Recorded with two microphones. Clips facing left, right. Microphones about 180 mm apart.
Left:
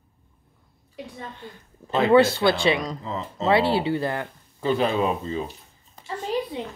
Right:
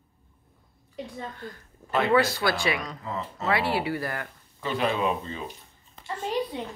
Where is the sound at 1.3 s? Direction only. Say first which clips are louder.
Right 1 dB; 20° left (ahead or behind).